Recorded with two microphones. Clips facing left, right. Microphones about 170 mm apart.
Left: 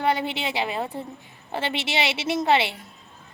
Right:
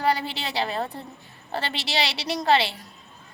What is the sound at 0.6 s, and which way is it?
A woman's voice, 10° left (ahead or behind).